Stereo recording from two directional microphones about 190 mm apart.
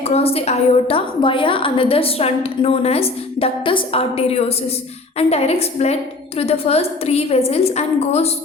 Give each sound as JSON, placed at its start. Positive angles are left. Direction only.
{"t": 0.0, "sound": "a woman's voice", "side_deg": 30}